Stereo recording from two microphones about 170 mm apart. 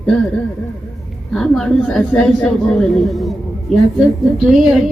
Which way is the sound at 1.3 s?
5° left (ahead or behind).